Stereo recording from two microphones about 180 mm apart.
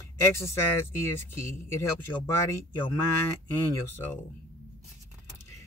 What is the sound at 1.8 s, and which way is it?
Speech, 15° left (ahead or behind).